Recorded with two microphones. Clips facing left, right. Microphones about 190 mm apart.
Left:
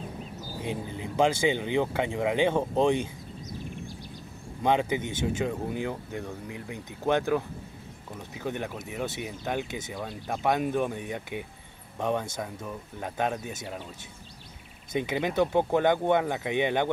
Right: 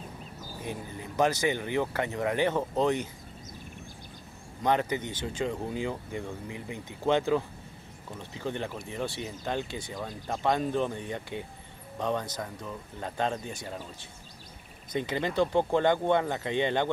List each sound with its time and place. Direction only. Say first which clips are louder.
0.6 s speech: left 4 dB; 20° left (ahead or behind)
4.6 s speech: left 2 dB; 15° left (ahead or behind)
8.4 s speech: left 1 dB; 10° left (ahead or behind)
15.0 s speech: left 2 dB; 15° left (ahead or behind)